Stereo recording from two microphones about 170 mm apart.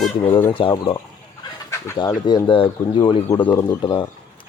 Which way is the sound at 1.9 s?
25° left (ahead or behind).